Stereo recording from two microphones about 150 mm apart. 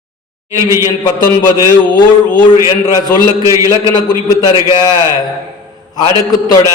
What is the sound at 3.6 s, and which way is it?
Speech, 25° left (ahead or behind).